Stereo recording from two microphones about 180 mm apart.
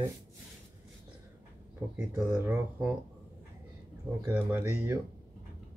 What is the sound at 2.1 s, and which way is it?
Speech, 15° right (ahead or behind).